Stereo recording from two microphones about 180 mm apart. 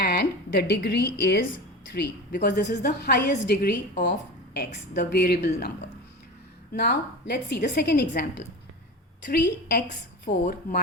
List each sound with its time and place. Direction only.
0.0 s a woman's voice: 65° left (ahead or behind)
6.7 s a woman's voice: 65° left (ahead or behind)
10.4 s speech: 50° left (ahead or behind)